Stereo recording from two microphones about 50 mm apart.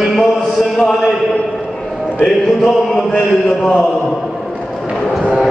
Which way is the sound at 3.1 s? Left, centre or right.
Centre.